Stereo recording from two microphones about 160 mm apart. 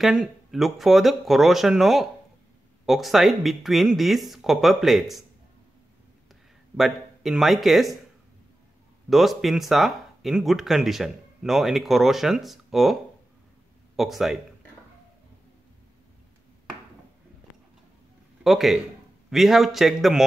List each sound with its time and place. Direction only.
0.0 s speech: 5° right (ahead or behind)
6.8 s speech: centre (ahead or behind)
9.1 s speech: centre (ahead or behind)
18.4 s speech: centre (ahead or behind)